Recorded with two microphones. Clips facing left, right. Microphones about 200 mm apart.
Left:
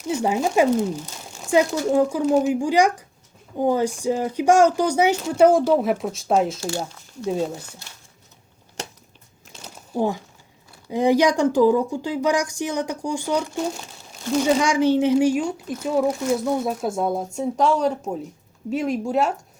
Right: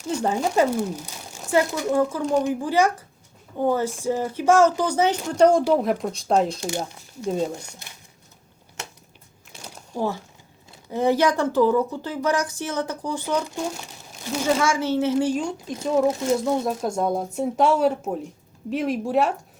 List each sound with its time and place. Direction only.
0.1 s speech: 10° left (ahead or behind)
1.9 s speech: 15° left (ahead or behind)
6.7 s speech: 15° right (ahead or behind)
7.3 s speech: 5° left (ahead or behind)
7.6 s speech: 15° right (ahead or behind)
9.9 s speech: 15° left (ahead or behind)
14.4 s speech: 15° left (ahead or behind)
16.0 s speech: 25° right (ahead or behind)
16.6 s speech: 5° left (ahead or behind)